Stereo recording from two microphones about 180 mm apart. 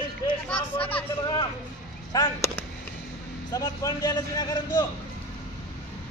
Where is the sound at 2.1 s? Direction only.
15° left (ahead or behind).